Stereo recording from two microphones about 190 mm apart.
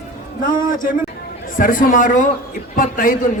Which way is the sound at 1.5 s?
45° left (ahead or behind).